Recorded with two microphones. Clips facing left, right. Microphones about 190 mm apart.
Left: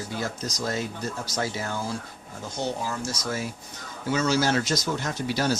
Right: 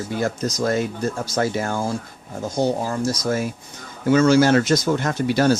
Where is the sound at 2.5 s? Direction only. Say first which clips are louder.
Right 8 dB; 40° right (ahead or behind).